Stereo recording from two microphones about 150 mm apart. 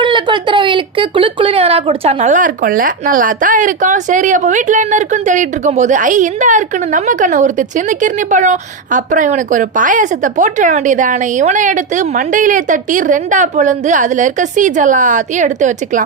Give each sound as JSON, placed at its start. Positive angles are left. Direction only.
{"t": 0.0, "sound": "speech", "side_deg": -30}